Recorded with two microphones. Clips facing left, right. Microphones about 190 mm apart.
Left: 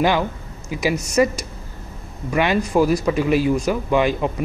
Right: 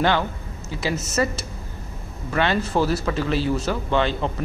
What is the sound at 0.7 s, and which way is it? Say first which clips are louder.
Speech: left 4 dB; 15° left (ahead or behind).